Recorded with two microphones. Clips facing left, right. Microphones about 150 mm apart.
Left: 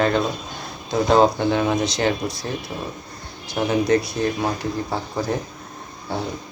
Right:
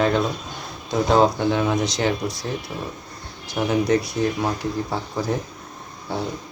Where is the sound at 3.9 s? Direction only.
5° right (ahead or behind).